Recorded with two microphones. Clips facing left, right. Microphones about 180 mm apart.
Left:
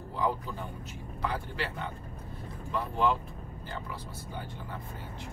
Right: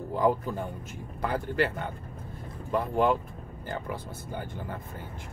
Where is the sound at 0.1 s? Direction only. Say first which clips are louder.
Right 6 dB; 45° right (ahead or behind).